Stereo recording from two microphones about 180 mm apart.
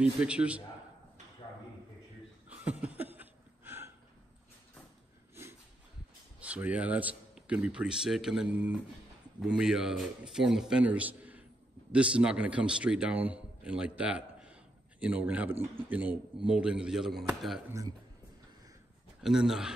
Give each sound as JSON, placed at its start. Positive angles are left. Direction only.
{"t": 0.0, "sound": "speech", "side_deg": -5}
{"t": 2.6, "sound": "a sound", "side_deg": -10}
{"t": 5.3, "sound": "a sound", "side_deg": -15}
{"t": 6.4, "sound": "a man's voice", "side_deg": -10}
{"t": 17.6, "sound": "speech", "side_deg": -15}
{"t": 19.2, "sound": "a man's voice", "side_deg": -5}